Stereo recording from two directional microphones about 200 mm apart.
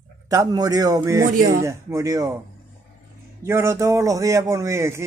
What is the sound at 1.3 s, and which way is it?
Speech, 40° right (ahead or behind).